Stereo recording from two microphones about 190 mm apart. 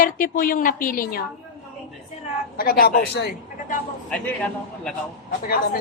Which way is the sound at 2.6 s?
50° left (ahead or behind).